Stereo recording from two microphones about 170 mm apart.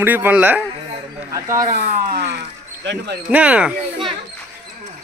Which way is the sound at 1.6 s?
65° right (ahead or behind).